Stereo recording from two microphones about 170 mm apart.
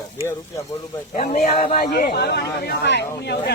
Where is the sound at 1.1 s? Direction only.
45° left (ahead or behind).